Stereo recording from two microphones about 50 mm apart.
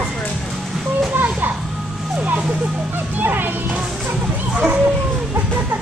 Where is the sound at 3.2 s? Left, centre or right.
Right.